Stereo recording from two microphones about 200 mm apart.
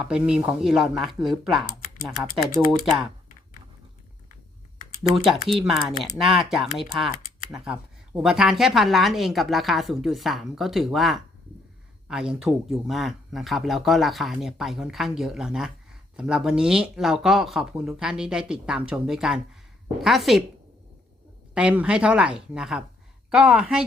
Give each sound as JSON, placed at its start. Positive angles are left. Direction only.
{"t": 0.0, "sound": "speech", "side_deg": -5}
{"t": 5.0, "sound": "speech", "side_deg": 0}
{"t": 21.5, "sound": "speech", "side_deg": -5}